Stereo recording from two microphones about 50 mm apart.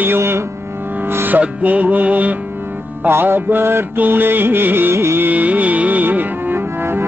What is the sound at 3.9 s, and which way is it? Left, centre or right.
Music, right.